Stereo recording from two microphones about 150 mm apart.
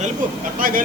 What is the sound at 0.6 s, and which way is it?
Speech, 70° right (ahead or behind).